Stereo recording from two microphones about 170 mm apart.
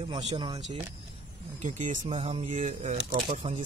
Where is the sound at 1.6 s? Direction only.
45° right (ahead or behind).